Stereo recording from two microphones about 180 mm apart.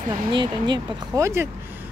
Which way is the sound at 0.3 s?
25° right (ahead or behind).